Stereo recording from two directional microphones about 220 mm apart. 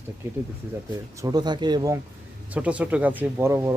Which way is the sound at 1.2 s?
15° right (ahead or behind).